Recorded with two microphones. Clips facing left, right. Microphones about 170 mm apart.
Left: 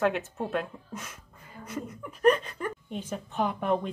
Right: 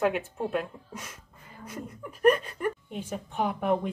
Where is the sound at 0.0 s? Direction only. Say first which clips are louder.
Even; 10° right (ahead or behind).